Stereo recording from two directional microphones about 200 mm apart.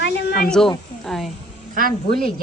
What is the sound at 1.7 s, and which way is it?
Speech, 45° right (ahead or behind).